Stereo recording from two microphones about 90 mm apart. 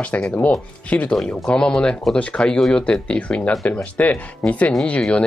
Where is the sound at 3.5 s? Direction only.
5° left (ahead or behind).